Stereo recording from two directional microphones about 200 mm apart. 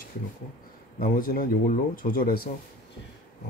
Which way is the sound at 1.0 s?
45° left (ahead or behind).